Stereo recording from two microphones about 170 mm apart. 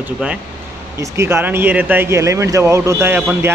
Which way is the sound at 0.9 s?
15° right (ahead or behind).